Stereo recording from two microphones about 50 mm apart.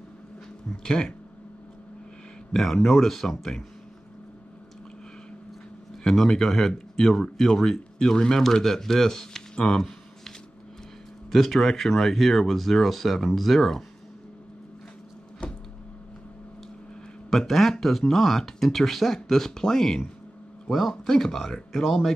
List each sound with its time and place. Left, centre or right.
0.8 s speech: centre
2.5 s speech: centre
6.0 s speech: centre
11.3 s speech: centre
15.4 s a sound: left
17.3 s speech: centre